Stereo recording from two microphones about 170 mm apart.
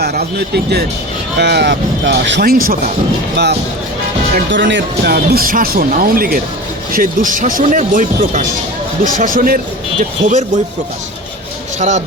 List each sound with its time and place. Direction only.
0.0 s speech: 70° right (ahead or behind)
3.3 s speech: 75° right (ahead or behind)
4.5 s speech: 90° right; by 8.4 s 45° right (ahead or behind)
9.1 s speech: 55° right (ahead or behind)
11.8 s speech: 45° right (ahead or behind)